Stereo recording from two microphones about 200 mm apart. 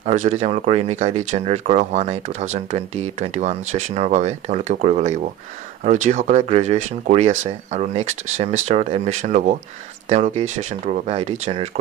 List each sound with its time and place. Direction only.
0.0 s speech: 35° right (ahead or behind)